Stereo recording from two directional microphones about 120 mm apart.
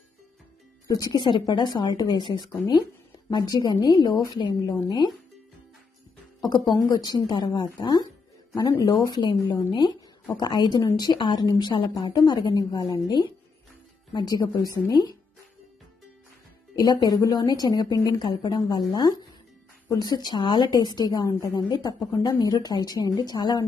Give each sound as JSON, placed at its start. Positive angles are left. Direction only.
{"t": 0.8, "sound": "a woman's voice", "side_deg": 30}
{"t": 6.9, "sound": "a woman's voice", "side_deg": 35}
{"t": 16.7, "sound": "a woman's voice", "side_deg": 35}
{"t": 19.9, "sound": "a woman's voice", "side_deg": 35}